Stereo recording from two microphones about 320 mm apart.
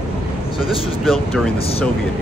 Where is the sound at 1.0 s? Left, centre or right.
Centre.